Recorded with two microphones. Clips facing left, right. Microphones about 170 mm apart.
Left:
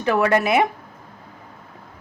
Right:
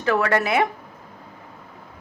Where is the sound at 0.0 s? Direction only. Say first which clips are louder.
Left 2 dB; 20° left (ahead or behind).